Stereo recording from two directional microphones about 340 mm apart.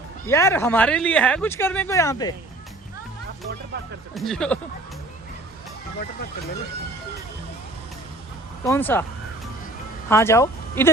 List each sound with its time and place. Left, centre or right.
0.3 s speech: centre
4.1 s speech: centre
8.6 s speech: centre
10.1 s speech: centre